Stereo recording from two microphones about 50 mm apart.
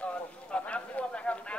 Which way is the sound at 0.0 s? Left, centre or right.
Left.